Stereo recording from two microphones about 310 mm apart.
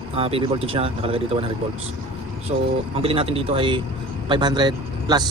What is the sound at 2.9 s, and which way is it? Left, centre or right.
Speech, centre.